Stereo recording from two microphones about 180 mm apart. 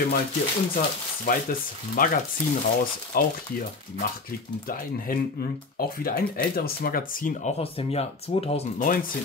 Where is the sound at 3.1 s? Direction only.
55° left (ahead or behind).